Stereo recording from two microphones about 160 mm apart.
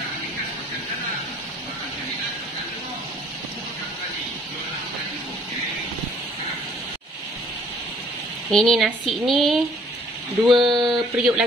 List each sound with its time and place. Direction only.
8.5 s speech: centre (ahead or behind)
10.4 s speech: 30° right (ahead or behind)
10.9 s speech: 5° right (ahead or behind)